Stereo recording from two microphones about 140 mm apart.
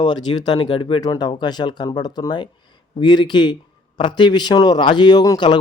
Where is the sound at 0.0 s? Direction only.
30° left (ahead or behind).